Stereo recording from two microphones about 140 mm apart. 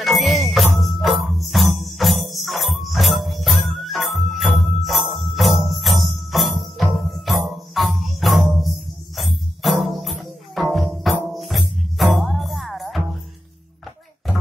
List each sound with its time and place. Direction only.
0.0 s jingle bell: centre (ahead or behind)
0.7 s music: centre (ahead or behind)
4.8 s jingle bell: centre (ahead or behind)
5.6 s music: centre (ahead or behind)